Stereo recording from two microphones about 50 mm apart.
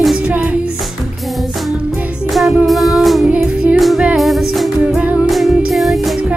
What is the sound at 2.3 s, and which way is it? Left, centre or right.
Music, centre.